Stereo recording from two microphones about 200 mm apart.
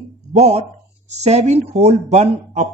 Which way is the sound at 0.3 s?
35° right (ahead or behind).